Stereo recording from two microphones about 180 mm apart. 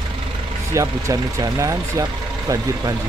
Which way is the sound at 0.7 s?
15° right (ahead or behind).